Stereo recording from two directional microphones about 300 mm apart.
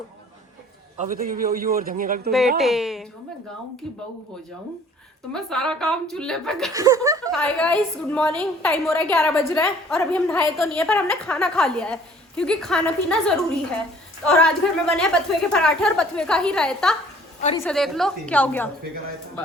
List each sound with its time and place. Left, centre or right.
0.9 s a man's voice: right
2.6 s a woman's voice: centre
5.3 s a woman's voice: centre
6.7 s speech: centre
7.3 s a woman's voice: centre